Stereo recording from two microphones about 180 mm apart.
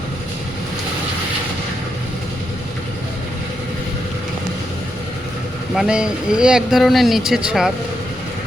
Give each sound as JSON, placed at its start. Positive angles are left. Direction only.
{"t": 5.7, "sound": "speech", "side_deg": -5}